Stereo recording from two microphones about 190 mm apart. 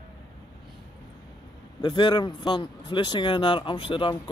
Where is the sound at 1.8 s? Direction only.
25° left (ahead or behind).